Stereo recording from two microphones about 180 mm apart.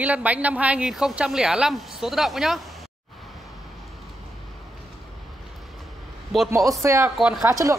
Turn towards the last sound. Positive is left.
turn(degrees=-15)  # may be behind; listen again after turning